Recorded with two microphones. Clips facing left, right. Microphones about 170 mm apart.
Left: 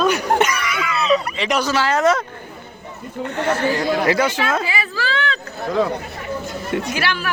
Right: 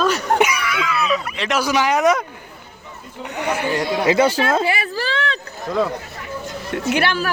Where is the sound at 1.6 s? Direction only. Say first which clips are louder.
Right 2 dB; 15° right (ahead or behind).